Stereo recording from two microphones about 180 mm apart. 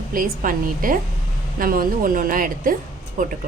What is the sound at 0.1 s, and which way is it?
A woman's voice, 50° right (ahead or behind).